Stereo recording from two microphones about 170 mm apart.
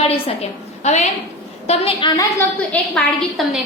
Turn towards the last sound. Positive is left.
turn(degrees=0)  # may be behind; listen again after turning